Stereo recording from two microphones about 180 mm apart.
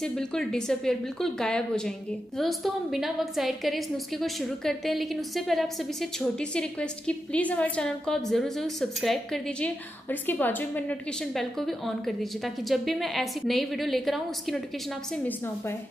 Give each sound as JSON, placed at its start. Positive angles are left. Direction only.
{"t": 0.0, "sound": "a woman's voice", "side_deg": 5}
{"t": 15.2, "sound": "a woman's voice", "side_deg": 10}